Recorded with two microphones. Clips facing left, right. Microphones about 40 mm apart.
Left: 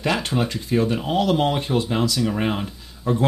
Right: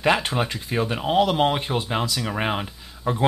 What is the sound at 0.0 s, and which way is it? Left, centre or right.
Speech, centre.